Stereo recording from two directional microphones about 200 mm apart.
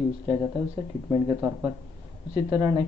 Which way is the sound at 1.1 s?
20° right (ahead or behind).